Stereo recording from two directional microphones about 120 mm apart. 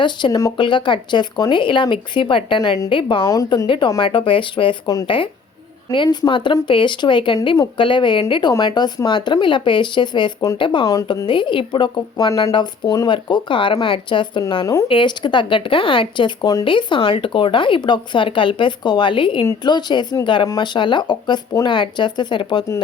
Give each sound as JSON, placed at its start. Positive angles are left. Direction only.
{"t": 0.0, "sound": "speech", "side_deg": 40}
{"t": 3.2, "sound": "a woman's voice", "side_deg": 30}
{"t": 3.7, "sound": "speech", "side_deg": 40}
{"t": 10.8, "sound": "a woman's voice", "side_deg": 30}
{"t": 11.3, "sound": "speech", "side_deg": 45}